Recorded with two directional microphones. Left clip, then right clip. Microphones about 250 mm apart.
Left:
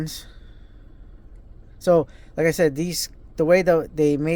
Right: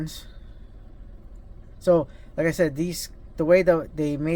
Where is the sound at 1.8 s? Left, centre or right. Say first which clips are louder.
Left 2 dB; left.